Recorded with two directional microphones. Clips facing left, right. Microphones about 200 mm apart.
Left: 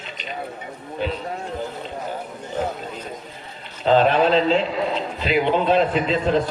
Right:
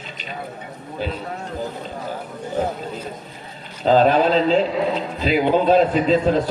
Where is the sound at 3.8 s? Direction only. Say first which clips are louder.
Right 1 dB; 40° right (ahead or behind).